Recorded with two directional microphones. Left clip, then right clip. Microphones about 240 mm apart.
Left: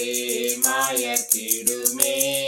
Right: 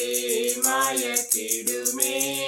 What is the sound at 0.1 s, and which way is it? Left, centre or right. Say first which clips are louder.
Music: even; left.